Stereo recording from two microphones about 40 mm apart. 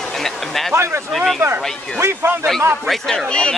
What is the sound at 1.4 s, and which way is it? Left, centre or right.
Speech, right.